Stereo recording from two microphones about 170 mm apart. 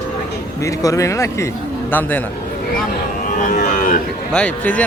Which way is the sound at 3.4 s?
50° left (ahead or behind).